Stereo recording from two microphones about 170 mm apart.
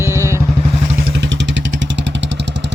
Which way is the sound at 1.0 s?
85° right.